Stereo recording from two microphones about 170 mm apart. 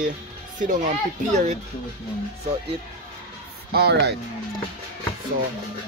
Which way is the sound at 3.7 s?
70° right (ahead or behind).